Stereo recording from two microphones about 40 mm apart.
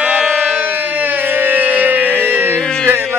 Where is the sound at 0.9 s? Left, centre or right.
Right.